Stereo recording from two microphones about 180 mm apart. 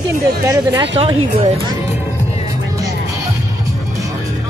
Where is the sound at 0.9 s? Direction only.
35° right (ahead or behind).